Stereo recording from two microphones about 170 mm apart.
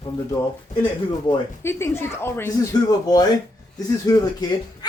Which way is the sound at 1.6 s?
15° left (ahead or behind).